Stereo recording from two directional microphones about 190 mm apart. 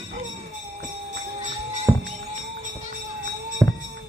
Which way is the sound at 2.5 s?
45° right (ahead or behind).